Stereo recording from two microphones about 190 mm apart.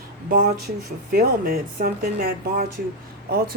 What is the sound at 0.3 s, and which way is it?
Speech, 45° right (ahead or behind).